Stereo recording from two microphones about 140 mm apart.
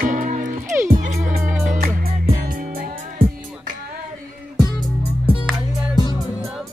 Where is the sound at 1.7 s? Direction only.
90° right.